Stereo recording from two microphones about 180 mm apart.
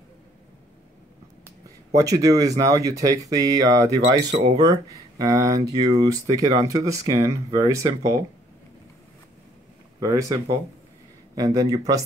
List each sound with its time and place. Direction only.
2.0 s speech: 20° right (ahead or behind)
9.9 s speech: 15° right (ahead or behind)